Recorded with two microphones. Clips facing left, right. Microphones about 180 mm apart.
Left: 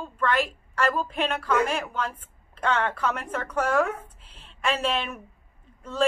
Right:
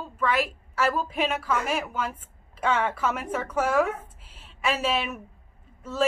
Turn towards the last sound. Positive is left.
turn(degrees=-5)  # may be behind; listen again after turning